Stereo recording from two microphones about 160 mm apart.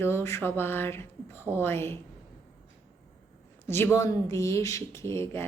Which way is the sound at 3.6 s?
15° left (ahead or behind).